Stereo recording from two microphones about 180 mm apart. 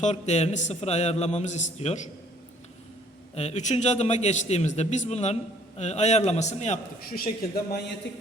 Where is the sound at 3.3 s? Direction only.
40° left (ahead or behind).